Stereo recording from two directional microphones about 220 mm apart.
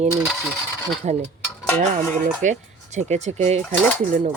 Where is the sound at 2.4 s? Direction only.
35° right (ahead or behind).